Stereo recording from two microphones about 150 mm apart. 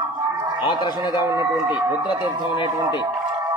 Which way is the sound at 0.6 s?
30° left (ahead or behind).